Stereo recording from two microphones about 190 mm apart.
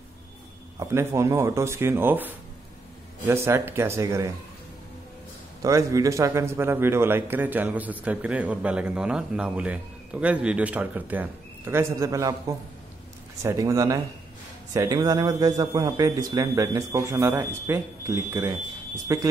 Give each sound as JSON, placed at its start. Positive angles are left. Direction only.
{"t": 0.7, "sound": "a man's voice", "side_deg": -15}
{"t": 5.6, "sound": "a man's voice", "side_deg": -15}